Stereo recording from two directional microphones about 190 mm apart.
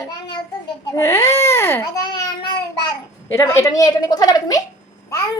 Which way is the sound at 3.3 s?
15° left (ahead or behind).